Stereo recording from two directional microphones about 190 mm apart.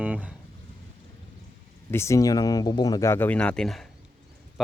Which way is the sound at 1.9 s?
15° left (ahead or behind).